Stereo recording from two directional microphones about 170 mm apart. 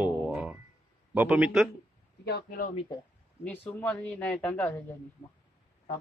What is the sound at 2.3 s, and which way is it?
Speech, 65° left (ahead or behind).